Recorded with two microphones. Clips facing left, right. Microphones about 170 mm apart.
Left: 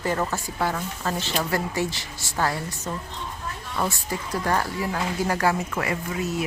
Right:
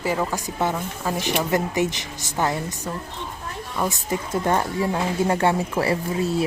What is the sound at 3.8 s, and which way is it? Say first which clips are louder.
Speech: right 3 dB; 20° right (ahead or behind).